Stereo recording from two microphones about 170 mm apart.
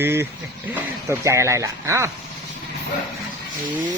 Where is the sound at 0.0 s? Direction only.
15° right (ahead or behind).